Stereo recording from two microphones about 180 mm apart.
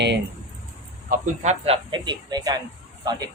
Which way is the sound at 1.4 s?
35° right (ahead or behind).